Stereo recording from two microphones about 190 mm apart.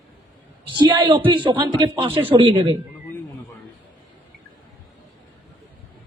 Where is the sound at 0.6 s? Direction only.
25° right (ahead or behind).